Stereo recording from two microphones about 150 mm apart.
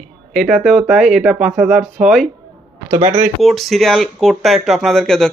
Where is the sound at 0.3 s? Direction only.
Centre (ahead or behind).